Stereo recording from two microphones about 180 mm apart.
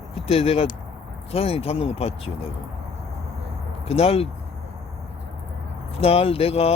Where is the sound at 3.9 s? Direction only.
35° left (ahead or behind).